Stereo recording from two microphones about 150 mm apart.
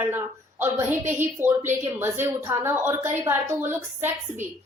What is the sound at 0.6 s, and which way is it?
A woman's voice, 15° right (ahead or behind).